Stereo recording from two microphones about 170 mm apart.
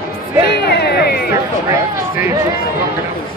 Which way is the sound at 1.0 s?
70° left (ahead or behind).